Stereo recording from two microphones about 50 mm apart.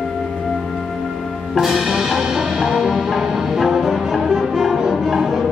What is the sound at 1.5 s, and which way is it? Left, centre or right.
Music, centre.